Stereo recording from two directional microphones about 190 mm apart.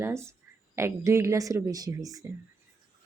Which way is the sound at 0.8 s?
15° right (ahead or behind).